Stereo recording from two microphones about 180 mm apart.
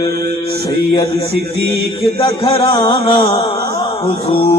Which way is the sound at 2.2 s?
30° left (ahead or behind).